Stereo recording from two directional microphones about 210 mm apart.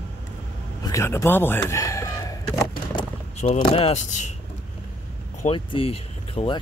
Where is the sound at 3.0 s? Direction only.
25° left (ahead or behind).